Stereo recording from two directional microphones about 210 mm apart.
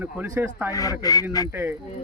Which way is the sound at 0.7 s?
15° left (ahead or behind).